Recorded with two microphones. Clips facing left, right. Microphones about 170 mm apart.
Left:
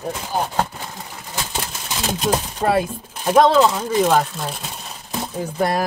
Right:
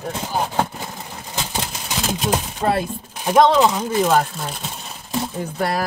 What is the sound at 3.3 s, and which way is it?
Speech, 20° right (ahead or behind).